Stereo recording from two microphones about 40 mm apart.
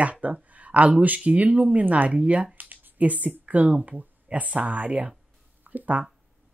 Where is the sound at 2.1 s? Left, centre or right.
Right.